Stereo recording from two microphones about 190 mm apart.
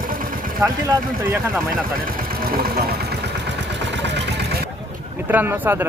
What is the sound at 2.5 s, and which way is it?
Vehicle, 50° right (ahead or behind).